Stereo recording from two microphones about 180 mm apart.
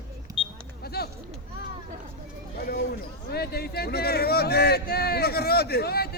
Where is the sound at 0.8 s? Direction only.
60° left (ahead or behind).